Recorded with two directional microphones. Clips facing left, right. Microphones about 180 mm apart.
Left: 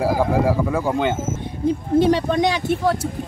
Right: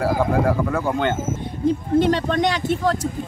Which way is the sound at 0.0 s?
10° left (ahead or behind).